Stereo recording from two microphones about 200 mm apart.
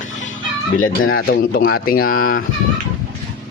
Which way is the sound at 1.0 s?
45° left (ahead or behind).